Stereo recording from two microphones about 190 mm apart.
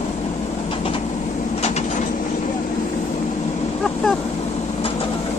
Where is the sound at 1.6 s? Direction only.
35° left (ahead or behind).